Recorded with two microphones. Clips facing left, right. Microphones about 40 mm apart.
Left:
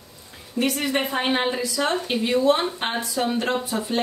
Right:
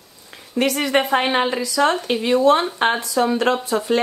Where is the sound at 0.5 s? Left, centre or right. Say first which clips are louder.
Right 5 dB; right.